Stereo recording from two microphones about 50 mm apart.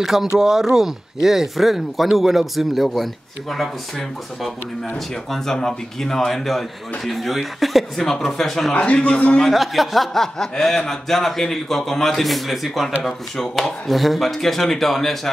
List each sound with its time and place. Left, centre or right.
0.0 s speech: centre
5.3 s speech: centre
8.7 s a man's voice: left
9.4 s speech: centre